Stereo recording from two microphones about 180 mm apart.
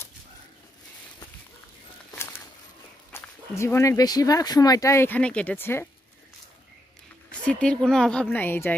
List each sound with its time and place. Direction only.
2.0 s a sound: 15° left (ahead or behind)
3.1 s speech: 15° left (ahead or behind)
7.2 s speech: 5° left (ahead or behind)